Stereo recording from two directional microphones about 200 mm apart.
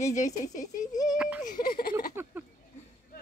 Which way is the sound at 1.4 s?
40° left (ahead or behind).